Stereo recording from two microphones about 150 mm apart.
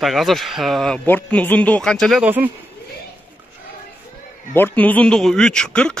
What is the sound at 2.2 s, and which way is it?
Speech, 10° right (ahead or behind).